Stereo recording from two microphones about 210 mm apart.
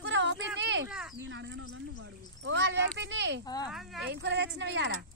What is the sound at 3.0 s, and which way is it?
Speech, 55° right (ahead or behind).